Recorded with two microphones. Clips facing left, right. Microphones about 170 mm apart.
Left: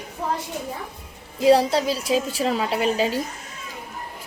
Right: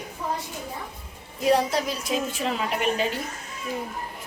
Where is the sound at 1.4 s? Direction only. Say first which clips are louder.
Left 5 dB; 30° left (ahead or behind).